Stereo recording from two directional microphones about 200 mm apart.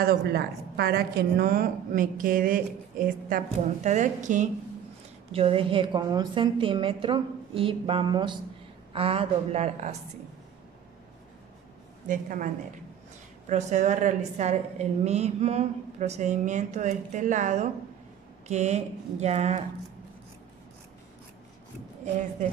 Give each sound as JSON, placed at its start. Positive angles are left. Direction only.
{"t": 0.0, "sound": "a woman's voice", "side_deg": -50}
{"t": 5.3, "sound": "a woman's voice", "side_deg": -25}
{"t": 12.1, "sound": "a woman's voice", "side_deg": -40}
{"t": 13.5, "sound": "a woman's voice", "side_deg": -35}